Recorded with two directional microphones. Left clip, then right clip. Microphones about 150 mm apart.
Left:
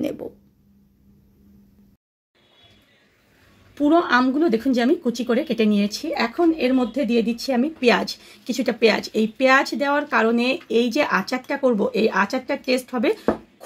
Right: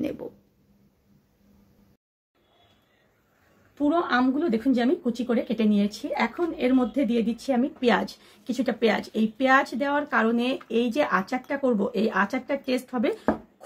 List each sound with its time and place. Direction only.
3.7 s speech: 45° left (ahead or behind)